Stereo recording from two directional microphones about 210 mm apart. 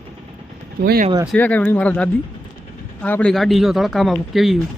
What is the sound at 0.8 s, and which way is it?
Speech, 45° right (ahead or behind).